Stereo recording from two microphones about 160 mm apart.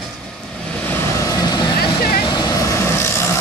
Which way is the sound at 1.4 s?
25° left (ahead or behind).